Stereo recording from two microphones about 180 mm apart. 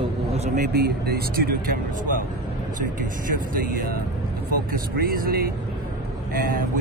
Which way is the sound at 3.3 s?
50° right (ahead or behind).